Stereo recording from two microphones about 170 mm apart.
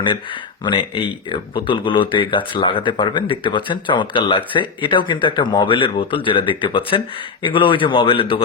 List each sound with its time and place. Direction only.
0.6 s speech: 30° left (ahead or behind)